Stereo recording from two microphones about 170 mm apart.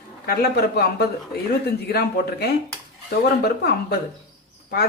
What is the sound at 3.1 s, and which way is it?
Speech, 70° left (ahead or behind).